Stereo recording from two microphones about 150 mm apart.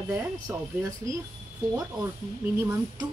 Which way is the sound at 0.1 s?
20° right (ahead or behind).